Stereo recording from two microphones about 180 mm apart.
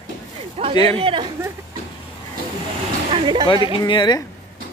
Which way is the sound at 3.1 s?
25° right (ahead or behind).